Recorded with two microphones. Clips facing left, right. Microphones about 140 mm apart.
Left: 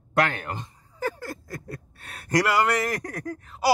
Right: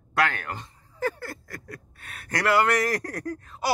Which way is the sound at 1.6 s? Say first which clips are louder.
Left 3 dB; 30° left (ahead or behind).